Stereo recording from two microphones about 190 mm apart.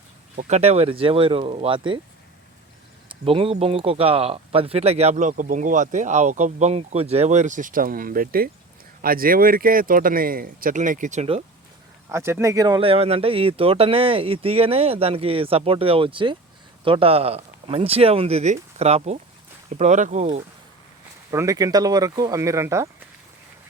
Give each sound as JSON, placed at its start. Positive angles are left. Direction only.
{"t": 0.3, "sound": "speech", "side_deg": -35}
{"t": 3.1, "sound": "speech", "side_deg": -30}
{"t": 12.0, "sound": "speech", "side_deg": -15}
{"t": 21.2, "sound": "speech", "side_deg": -15}